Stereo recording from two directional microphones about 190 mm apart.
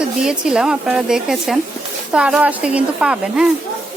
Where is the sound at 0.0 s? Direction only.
5° right (ahead or behind).